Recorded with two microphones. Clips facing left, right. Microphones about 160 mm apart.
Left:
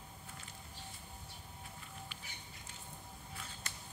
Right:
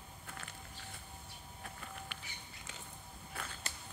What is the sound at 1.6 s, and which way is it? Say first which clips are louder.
Music: right 5 dB; 60° right (ahead or behind).